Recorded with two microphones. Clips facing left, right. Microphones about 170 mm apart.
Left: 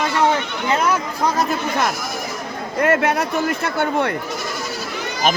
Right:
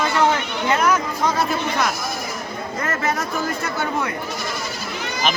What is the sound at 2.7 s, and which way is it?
Speech, 65° left (ahead or behind).